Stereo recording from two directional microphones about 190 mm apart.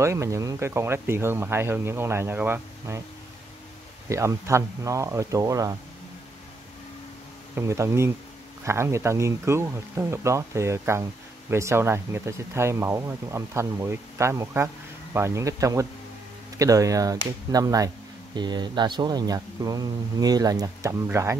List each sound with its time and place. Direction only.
0.0 s speech: 15° right (ahead or behind)
4.1 s speech: 15° right (ahead or behind)
7.5 s speech: 15° right (ahead or behind)